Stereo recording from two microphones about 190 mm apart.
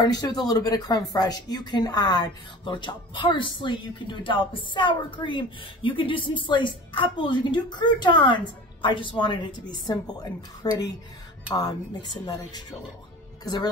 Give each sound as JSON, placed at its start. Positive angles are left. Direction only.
{"t": 0.0, "sound": "speech", "side_deg": 20}
{"t": 13.4, "sound": "speech", "side_deg": 20}